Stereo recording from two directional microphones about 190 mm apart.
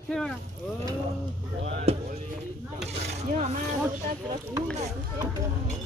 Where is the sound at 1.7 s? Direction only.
35° right (ahead or behind).